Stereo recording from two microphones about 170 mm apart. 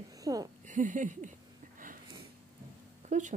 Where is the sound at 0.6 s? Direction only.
50° right (ahead or behind).